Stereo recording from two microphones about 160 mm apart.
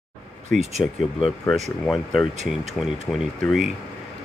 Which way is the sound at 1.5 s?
Centre (ahead or behind).